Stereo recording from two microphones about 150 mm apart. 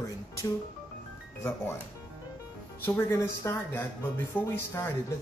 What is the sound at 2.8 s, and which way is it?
Speech, 15° left (ahead or behind).